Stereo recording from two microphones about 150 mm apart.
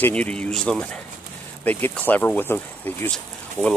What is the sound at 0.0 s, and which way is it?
Speech, 10° left (ahead or behind).